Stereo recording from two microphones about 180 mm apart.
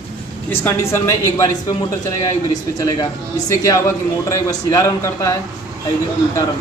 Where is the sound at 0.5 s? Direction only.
15° left (ahead or behind).